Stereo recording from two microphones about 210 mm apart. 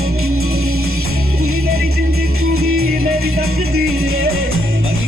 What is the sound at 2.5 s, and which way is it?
Music, 90° right.